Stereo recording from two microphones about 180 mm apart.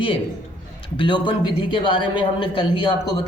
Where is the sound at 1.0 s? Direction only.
25° left (ahead or behind).